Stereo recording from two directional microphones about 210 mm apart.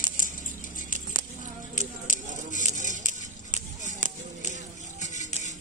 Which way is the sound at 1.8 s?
35° left (ahead or behind).